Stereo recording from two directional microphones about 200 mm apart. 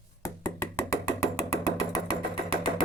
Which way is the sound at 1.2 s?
15° left (ahead or behind).